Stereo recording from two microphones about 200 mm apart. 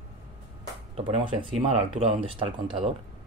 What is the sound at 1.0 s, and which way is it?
Speech, 30° right (ahead or behind).